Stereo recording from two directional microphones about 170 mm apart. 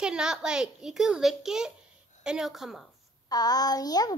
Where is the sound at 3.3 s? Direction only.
25° left (ahead or behind).